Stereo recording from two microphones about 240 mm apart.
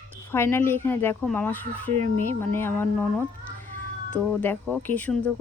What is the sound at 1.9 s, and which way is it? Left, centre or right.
Speech, right.